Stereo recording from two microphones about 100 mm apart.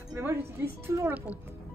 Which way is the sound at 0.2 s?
25° right (ahead or behind).